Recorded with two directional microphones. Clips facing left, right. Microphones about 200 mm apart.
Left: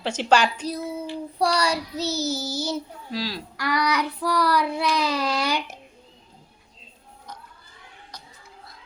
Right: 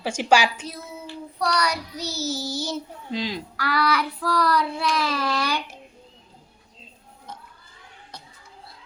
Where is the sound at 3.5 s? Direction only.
15° left (ahead or behind).